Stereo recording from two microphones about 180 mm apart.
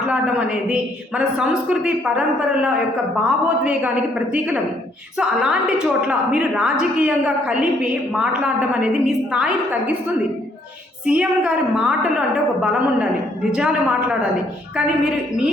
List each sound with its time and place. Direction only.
0.1 s a woman's voice: 5° right (ahead or behind)
11.0 s a woman's voice: 5° right (ahead or behind)
14.8 s a woman's voice: 5° right (ahead or behind)